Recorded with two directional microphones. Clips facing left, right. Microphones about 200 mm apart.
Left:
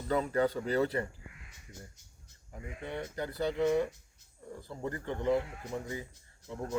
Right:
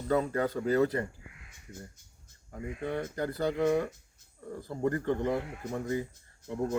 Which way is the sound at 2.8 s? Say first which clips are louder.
Right 4 dB; 50° right (ahead or behind).